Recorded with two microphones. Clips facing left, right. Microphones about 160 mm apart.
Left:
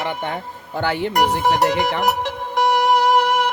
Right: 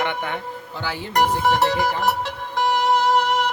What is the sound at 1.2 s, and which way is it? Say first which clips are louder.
Speech: even; 80° left.